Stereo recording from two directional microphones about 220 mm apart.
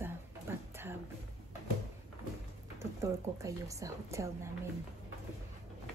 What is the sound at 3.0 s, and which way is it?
A woman's voice, 15° right (ahead or behind).